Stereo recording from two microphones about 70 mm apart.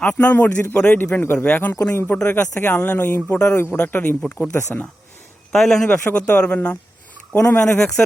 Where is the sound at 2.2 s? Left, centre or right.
Left.